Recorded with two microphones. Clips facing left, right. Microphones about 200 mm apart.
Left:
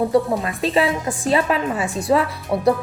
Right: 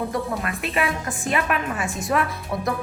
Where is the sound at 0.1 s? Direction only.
30° left (ahead or behind).